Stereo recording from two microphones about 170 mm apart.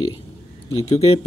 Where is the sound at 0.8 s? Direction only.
35° left (ahead or behind).